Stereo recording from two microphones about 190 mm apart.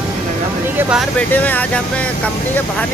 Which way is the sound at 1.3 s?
10° left (ahead or behind).